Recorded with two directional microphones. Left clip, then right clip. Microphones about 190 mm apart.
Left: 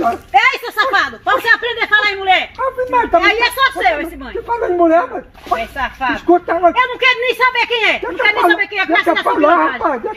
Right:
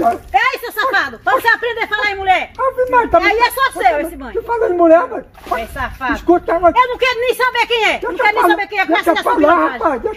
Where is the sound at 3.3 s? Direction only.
10° right (ahead or behind).